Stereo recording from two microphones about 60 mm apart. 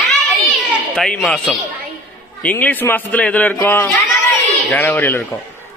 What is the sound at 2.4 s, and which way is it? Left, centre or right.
A man's voice, left.